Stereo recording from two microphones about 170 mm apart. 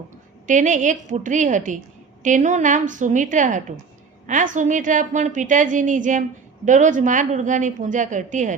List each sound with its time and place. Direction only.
0.4 s a woman's voice: 50° right (ahead or behind)